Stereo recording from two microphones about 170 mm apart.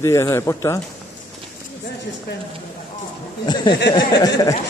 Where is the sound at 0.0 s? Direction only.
15° left (ahead or behind).